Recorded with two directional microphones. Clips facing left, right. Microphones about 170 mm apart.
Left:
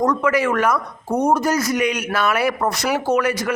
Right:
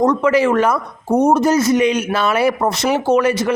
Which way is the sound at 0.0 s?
25° right (ahead or behind).